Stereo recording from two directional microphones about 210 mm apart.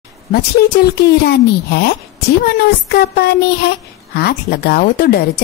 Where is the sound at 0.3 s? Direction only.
50° left (ahead or behind).